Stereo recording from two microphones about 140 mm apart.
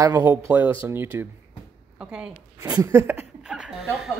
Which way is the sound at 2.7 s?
25° right (ahead or behind).